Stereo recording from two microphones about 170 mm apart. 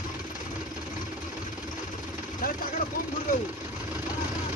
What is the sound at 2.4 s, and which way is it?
Vehicle, 55° left (ahead or behind).